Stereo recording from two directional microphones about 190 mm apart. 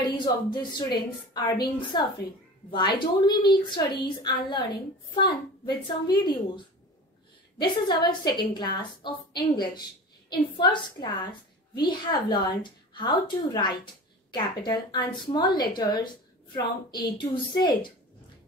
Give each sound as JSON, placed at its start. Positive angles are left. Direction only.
{"t": 0.0, "sound": "a woman's voice", "side_deg": 20}
{"t": 6.0, "sound": "a woman's voice", "side_deg": 25}